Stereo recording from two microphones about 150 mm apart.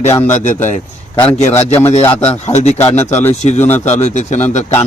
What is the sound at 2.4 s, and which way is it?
A man's voice, 50° left (ahead or behind).